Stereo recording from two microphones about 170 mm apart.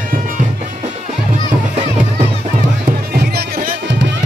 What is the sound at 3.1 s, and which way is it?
Music, 60° right (ahead or behind).